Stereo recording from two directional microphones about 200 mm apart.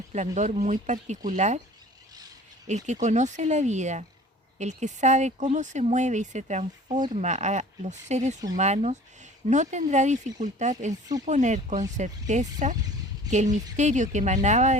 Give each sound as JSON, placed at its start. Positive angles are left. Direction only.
{"t": 0.1, "sound": "speech", "side_deg": -35}
{"t": 2.6, "sound": "speech", "side_deg": -35}